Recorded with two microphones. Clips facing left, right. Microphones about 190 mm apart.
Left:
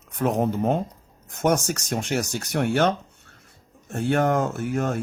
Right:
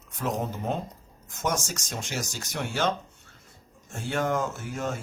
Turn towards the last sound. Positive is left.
turn(degrees=60)  # may be behind; listen again after turning